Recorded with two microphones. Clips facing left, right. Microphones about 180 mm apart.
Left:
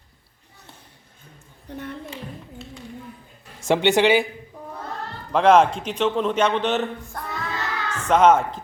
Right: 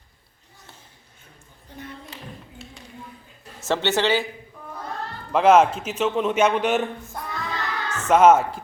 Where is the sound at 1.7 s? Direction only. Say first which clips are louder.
Left 6 dB; 65° left (ahead or behind).